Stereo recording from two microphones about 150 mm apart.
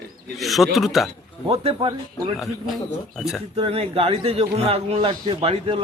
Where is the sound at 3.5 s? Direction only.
40° right (ahead or behind).